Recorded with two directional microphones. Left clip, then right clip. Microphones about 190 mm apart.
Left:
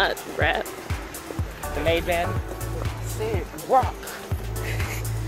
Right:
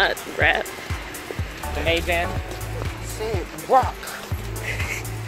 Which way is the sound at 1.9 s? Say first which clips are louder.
Right 1 dB; 50° left (ahead or behind).